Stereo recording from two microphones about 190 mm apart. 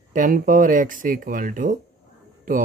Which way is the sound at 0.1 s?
45° right (ahead or behind).